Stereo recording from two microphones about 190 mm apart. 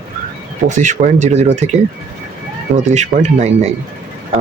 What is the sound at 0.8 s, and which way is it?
Speech, 40° right (ahead or behind).